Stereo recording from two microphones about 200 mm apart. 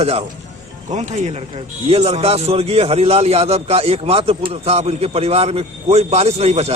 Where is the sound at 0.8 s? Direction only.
35° right (ahead or behind).